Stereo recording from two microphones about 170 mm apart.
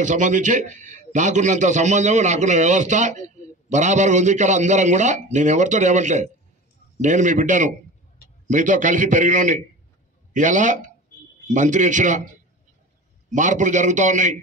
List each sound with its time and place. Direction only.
0.0 s a man's voice: 45° right (ahead or behind)
13.3 s a man's voice: 45° right (ahead or behind)